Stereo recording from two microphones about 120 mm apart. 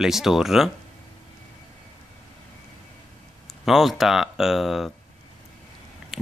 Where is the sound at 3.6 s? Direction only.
Centre (ahead or behind).